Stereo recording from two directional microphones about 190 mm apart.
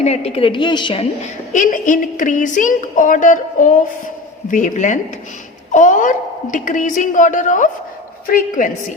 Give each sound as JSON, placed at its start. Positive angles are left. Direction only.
{"t": 0.0, "sound": "a woman's voice", "side_deg": 35}